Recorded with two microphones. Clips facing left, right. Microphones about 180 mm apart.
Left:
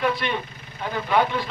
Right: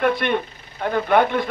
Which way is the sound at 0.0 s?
55° right (ahead or behind).